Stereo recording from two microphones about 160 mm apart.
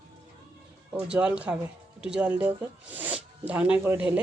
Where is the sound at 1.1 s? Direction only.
5° right (ahead or behind).